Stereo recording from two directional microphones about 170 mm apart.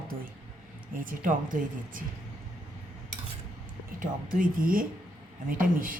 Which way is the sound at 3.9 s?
55° right (ahead or behind).